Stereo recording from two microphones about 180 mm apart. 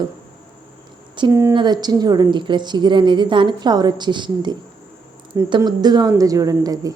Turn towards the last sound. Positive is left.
turn(degrees=-20)  # may be behind; listen again after turning